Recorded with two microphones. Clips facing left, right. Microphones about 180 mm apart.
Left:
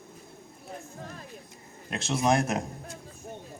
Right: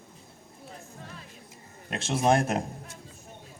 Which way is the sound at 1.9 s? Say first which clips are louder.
Right 1 dB; 25° right (ahead or behind).